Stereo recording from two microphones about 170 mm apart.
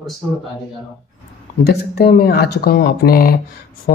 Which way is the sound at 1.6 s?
70° left (ahead or behind).